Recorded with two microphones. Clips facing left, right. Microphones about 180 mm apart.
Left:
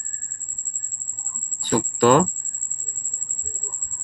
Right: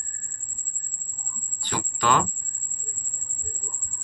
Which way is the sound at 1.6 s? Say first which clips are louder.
Left 9 dB; 45° left (ahead or behind).